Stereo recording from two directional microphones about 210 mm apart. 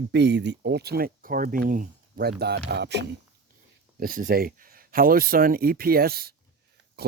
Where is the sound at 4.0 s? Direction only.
45° right (ahead or behind).